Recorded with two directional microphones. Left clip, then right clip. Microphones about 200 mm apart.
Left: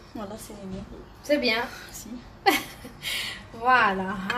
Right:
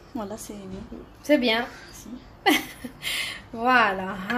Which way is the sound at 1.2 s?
40° right (ahead or behind).